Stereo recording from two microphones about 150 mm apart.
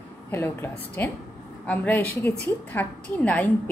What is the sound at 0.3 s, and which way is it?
Speech, 15° left (ahead or behind).